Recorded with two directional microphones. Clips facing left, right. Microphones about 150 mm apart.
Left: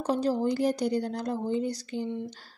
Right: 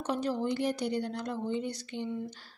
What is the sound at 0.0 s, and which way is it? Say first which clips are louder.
A woman's voice: left 5 dB; 35° left (ahead or behind).